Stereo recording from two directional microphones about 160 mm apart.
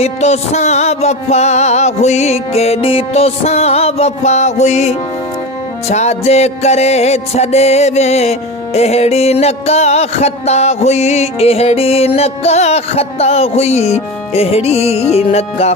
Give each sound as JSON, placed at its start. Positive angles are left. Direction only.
{"t": 0.0, "sound": "music", "side_deg": 45}